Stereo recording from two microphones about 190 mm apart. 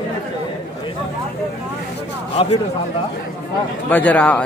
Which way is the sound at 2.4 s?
30° left (ahead or behind).